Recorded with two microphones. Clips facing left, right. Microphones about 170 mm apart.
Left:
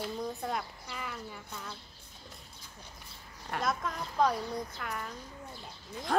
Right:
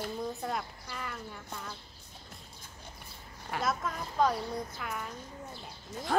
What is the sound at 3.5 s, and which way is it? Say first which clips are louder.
A woman's voice: even; centre (ahead or behind).